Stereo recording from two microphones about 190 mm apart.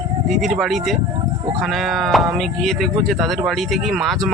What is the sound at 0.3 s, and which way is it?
Speech, centre (ahead or behind).